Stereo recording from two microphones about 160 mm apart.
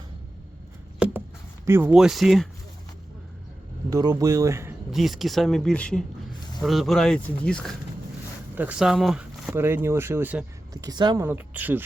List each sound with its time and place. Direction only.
1.0 s a sound: 5° right (ahead or behind)
1.6 s speech: 15° right (ahead or behind)
3.8 s speech: 20° right (ahead or behind)
4.9 s speech: centre (ahead or behind)
8.5 s speech: 5° right (ahead or behind)
10.8 s speech: 25° right (ahead or behind)
11.3 s speech: 10° right (ahead or behind)